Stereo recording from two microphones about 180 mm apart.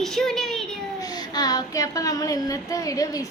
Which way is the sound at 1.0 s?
20° left (ahead or behind).